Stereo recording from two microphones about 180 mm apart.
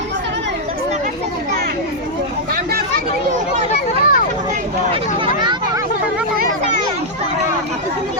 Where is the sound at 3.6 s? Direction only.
45° left (ahead or behind).